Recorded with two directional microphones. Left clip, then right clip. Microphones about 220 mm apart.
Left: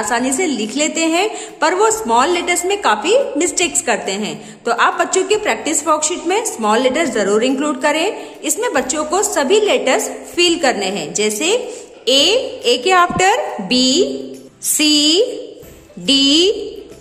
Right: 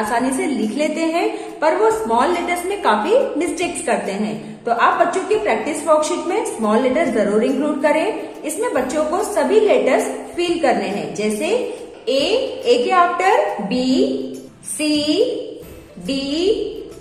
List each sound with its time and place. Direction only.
0.0 s a woman's voice: 35° left (ahead or behind)